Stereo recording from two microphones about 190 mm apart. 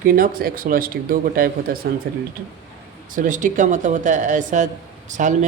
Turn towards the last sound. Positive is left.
turn(degrees=-40)  # may be behind; listen again after turning